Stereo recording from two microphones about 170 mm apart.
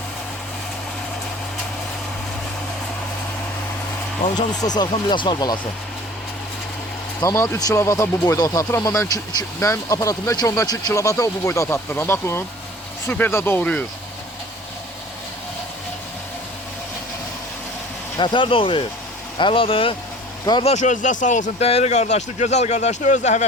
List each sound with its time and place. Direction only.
4.2 s speech: 25° left (ahead or behind)
7.2 s speech: 20° left (ahead or behind)
18.2 s speech: 30° left (ahead or behind)
20.7 s speech: 45° left (ahead or behind)